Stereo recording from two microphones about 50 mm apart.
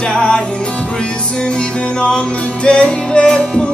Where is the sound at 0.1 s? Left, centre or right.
Centre.